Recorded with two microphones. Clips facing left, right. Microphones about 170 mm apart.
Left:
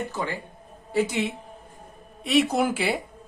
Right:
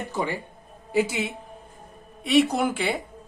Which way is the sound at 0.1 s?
15° right (ahead or behind).